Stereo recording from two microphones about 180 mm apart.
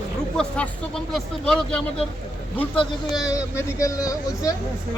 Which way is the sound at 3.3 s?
15° left (ahead or behind).